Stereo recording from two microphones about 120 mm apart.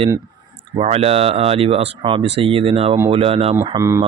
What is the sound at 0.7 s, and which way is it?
Speech, 60° right (ahead or behind).